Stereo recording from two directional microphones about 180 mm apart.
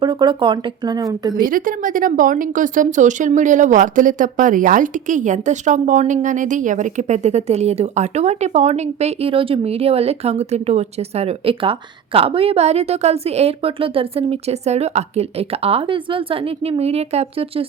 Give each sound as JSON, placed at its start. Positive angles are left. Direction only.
{"t": 0.0, "sound": "speech", "side_deg": -25}
{"t": 1.4, "sound": "speech", "side_deg": -50}